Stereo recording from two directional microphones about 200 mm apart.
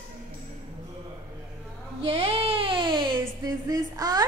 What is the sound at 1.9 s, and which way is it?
Speech, 30° right (ahead or behind).